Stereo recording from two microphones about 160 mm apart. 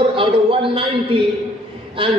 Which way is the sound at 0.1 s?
35° right (ahead or behind).